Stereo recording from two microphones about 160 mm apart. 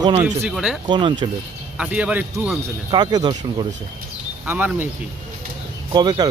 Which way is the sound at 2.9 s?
25° right (ahead or behind).